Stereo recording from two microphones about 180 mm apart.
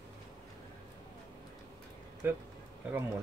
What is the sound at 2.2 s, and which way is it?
Speech, 10° right (ahead or behind).